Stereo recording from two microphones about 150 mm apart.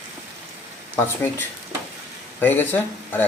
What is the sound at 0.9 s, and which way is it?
Speech, 15° left (ahead or behind).